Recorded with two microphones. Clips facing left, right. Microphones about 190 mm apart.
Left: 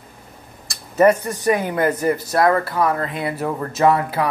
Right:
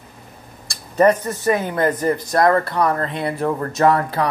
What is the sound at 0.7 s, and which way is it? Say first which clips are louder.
A man's voice: even; 10° left (ahead or behind).